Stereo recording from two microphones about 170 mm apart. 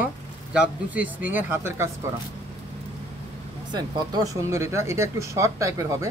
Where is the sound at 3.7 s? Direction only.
25° right (ahead or behind).